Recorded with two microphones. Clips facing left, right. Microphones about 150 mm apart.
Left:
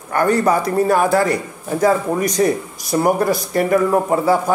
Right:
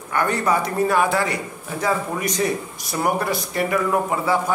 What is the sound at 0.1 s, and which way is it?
A man's voice, 40° left (ahead or behind).